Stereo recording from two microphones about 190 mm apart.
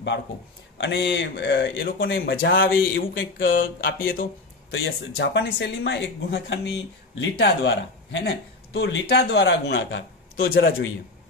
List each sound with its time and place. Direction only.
0.7 s speech: 70° left (ahead or behind)
2.1 s speech: 50° left (ahead or behind)
2.6 s a sound: 90° left
4.6 s speech: 90° left
5.1 s speech: 65° left (ahead or behind)